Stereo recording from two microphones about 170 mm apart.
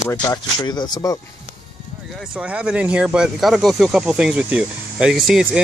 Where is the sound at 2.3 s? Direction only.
5° right (ahead or behind).